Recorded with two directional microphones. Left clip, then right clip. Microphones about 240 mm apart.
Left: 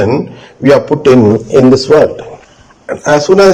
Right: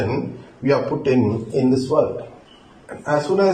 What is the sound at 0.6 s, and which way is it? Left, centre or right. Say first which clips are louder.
Speech: left 12 dB; left.